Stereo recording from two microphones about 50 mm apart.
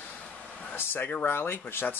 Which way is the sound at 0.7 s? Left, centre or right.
Left.